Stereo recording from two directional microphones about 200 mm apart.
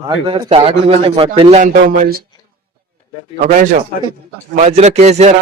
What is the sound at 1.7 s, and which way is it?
Speech, 45° right (ahead or behind).